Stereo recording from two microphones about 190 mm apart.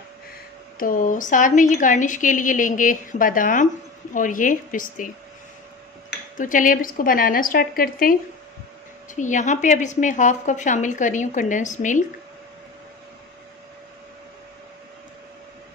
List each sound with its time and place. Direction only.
0.7 s a woman's voice: 45° left (ahead or behind)
6.3 s a woman's voice: 45° left (ahead or behind)